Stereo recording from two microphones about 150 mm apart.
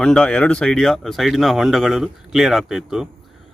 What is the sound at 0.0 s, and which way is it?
Speech, 5° left (ahead or behind).